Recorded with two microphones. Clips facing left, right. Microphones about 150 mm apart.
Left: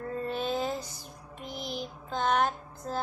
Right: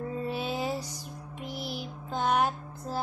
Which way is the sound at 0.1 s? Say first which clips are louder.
Left 4 dB; 10° right (ahead or behind).